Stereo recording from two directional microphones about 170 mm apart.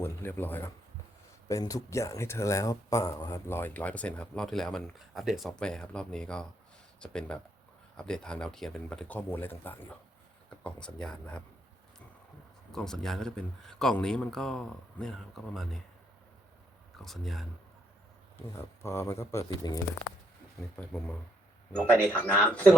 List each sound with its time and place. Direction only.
0.0 s speech: 15° left (ahead or behind)
12.7 s speech: 5° left (ahead or behind)
17.0 s speech: centre (ahead or behind)
18.3 s speech: 15° left (ahead or behind)
20.6 s speech: 5° left (ahead or behind)